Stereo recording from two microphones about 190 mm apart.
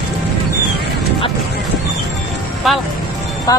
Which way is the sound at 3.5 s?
20° left (ahead or behind).